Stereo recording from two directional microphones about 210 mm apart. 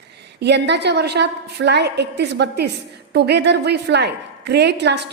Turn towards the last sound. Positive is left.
turn(degrees=-55)  # may be behind; listen again after turning